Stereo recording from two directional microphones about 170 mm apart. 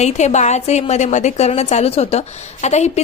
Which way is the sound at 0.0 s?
40° left (ahead or behind).